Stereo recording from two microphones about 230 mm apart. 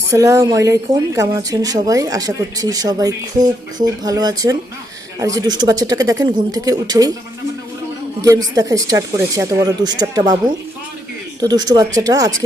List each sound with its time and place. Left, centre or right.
0.1 s speech: centre
8.2 s speech: centre